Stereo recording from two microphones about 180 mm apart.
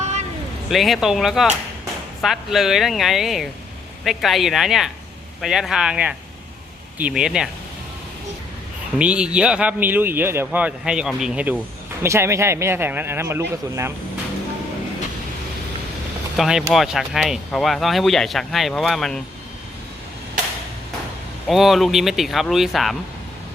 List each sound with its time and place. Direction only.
0.0 s a sound: 40° right (ahead or behind)
0.7 s speech: centre (ahead or behind)
9.0 s speech: 5° right (ahead or behind)
16.4 s speech: 5° right (ahead or behind)
21.4 s speech: centre (ahead or behind)